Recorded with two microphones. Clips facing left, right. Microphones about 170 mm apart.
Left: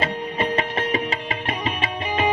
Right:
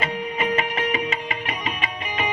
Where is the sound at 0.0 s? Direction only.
35° left (ahead or behind).